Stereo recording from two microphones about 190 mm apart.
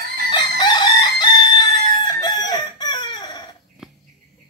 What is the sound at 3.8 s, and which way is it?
Cricket, 5° right (ahead or behind).